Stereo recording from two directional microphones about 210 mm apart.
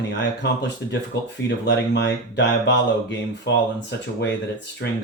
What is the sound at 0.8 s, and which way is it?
Speech, 55° left (ahead or behind).